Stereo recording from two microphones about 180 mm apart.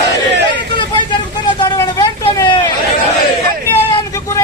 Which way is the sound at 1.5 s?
20° left (ahead or behind).